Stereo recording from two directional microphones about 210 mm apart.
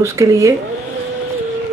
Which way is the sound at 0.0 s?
15° right (ahead or behind).